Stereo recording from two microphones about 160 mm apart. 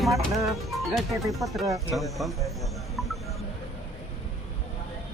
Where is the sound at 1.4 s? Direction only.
Centre (ahead or behind).